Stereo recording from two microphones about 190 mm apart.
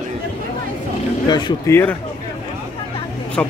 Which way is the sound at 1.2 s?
25° left (ahead or behind).